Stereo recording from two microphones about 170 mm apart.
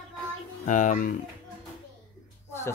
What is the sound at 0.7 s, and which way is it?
Speech, 50° left (ahead or behind).